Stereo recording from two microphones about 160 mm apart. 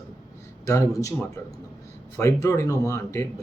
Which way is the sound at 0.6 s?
20° left (ahead or behind).